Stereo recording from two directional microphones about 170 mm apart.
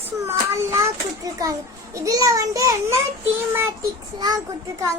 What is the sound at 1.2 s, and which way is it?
A child's voice, 20° right (ahead or behind).